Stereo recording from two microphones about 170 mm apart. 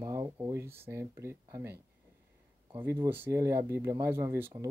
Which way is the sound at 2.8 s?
15° right (ahead or behind).